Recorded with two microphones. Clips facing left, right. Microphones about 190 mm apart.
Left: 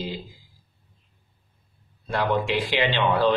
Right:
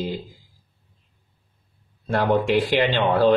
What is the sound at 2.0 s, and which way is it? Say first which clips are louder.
A man's voice: right 4 dB; 50° right (ahead or behind).